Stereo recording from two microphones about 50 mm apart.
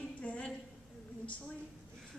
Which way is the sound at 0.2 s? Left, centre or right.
Left.